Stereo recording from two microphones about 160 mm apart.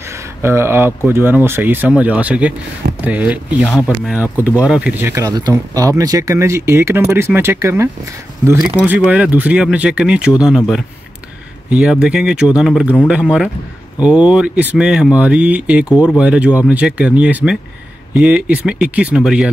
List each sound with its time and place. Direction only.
0.1 s speech: 15° right (ahead or behind)